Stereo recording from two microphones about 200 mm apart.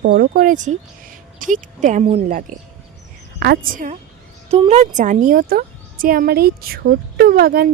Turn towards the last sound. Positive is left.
turn(degrees=-50)  # may be behind; listen again after turning